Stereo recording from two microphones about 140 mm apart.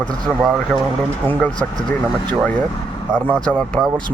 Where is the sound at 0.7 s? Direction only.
Centre (ahead or behind).